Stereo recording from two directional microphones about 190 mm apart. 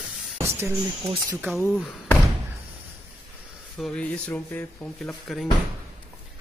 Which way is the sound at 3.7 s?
5° left (ahead or behind).